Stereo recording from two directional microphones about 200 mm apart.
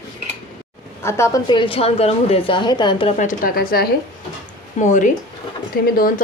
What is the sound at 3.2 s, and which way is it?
Speech, 45° left (ahead or behind).